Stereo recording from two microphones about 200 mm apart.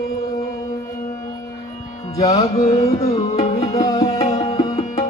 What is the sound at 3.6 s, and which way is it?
Music, 20° left (ahead or behind).